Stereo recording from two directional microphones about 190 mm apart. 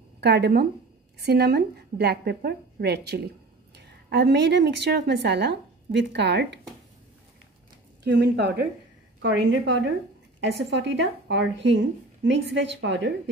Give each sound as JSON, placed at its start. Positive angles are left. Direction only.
{"t": 0.2, "sound": "a woman's voice", "side_deg": -60}
{"t": 8.0, "sound": "a woman's voice", "side_deg": -60}